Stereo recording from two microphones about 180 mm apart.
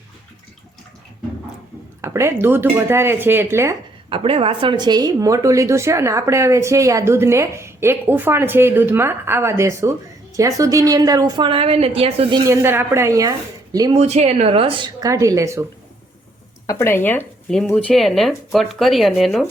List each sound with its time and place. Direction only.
2.0 s a woman's voice: 15° right (ahead or behind)
4.1 s a woman's voice: 30° right (ahead or behind)
12.5 s a woman's voice: 15° right (ahead or behind)
13.9 s a woman's voice: 35° right (ahead or behind); by 15.6 s 15° right (ahead or behind)
16.6 s speech: 15° left (ahead or behind); by 19.5 s centre (ahead or behind)